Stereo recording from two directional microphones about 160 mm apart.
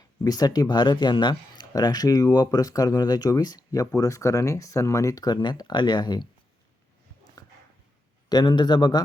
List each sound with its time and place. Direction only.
0.3 s speech: 25° left (ahead or behind)
7.4 s dog: 20° left (ahead or behind)
8.3 s speech: 25° left (ahead or behind)